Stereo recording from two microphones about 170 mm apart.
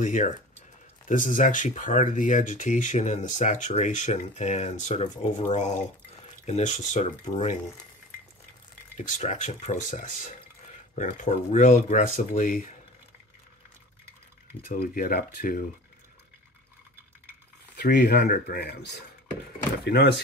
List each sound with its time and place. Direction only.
0.0 s speech: 45° left (ahead or behind)
8.9 s speech: 45° left (ahead or behind)
14.6 s speech: 55° left (ahead or behind)
17.9 s speech: 75° left (ahead or behind)